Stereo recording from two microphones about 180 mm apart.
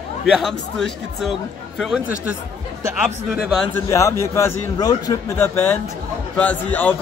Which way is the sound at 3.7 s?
15° left (ahead or behind).